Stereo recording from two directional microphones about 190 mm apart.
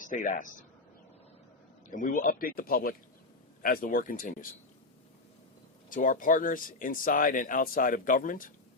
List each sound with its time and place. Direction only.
0.0 s speech: 45° left (ahead or behind)
1.9 s speech: 45° left (ahead or behind)
5.9 s speech: 45° left (ahead or behind)